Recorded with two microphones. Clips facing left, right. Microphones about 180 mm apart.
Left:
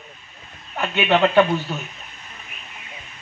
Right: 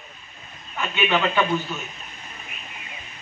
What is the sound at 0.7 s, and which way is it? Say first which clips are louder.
Speech: left 4 dB; 60° left (ahead or behind).